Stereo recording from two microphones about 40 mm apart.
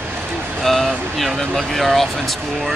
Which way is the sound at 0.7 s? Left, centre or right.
Centre.